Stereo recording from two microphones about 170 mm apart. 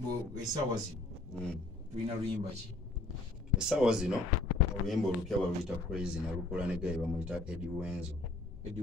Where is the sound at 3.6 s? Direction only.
5° right (ahead or behind).